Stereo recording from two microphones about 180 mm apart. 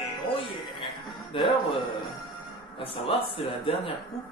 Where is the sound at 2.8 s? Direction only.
30° left (ahead or behind).